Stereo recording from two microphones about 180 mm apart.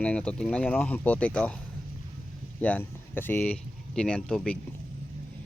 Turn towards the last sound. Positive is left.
turn(degrees=5)  # may be behind; listen again after turning